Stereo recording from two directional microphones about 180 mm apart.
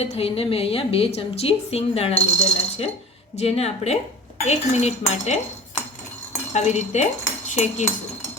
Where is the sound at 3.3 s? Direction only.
35° left (ahead or behind).